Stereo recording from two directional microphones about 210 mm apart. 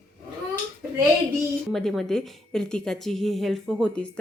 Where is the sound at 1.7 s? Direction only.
Centre (ahead or behind).